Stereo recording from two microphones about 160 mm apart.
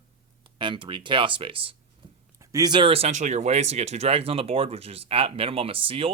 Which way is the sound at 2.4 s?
20° right (ahead or behind).